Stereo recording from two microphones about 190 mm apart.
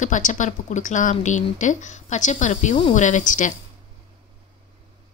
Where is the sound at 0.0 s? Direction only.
40° left (ahead or behind).